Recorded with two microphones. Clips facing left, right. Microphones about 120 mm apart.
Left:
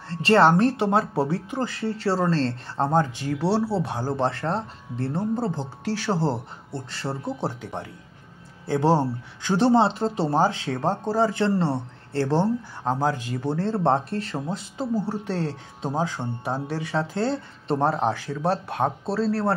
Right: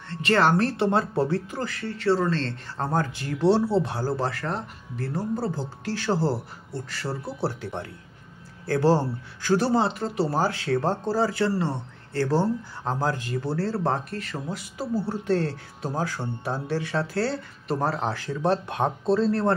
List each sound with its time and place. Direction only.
0.1 s speech: 30° left (ahead or behind)
6.7 s speech: 30° left (ahead or behind); by 19.5 s 5° left (ahead or behind)